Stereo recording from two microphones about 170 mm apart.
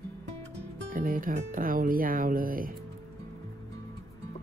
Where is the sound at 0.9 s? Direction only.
55° right (ahead or behind).